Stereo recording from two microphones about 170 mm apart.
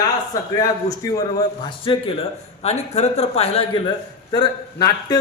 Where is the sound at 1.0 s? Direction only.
20° left (ahead or behind).